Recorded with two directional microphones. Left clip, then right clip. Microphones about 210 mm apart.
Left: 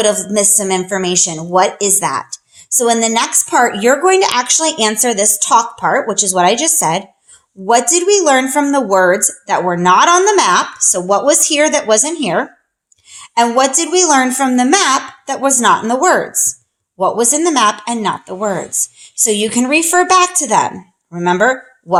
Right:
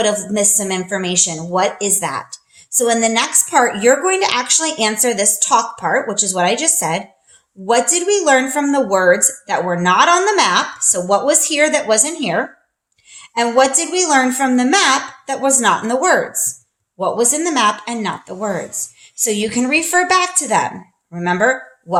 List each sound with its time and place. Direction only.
0.0 s a woman's voice: 30° left (ahead or behind)